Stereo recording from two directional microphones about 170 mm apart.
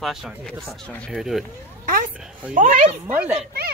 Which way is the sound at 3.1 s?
10° right (ahead or behind).